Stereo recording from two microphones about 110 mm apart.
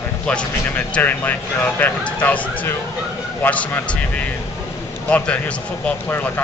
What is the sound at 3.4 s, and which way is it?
Speech, 15° left (ahead or behind).